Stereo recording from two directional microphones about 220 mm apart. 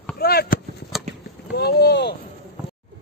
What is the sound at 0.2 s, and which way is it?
Chop, 45° left (ahead or behind).